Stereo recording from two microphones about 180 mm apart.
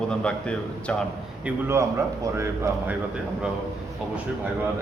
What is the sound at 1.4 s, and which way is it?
A man's voice, 15° right (ahead or behind).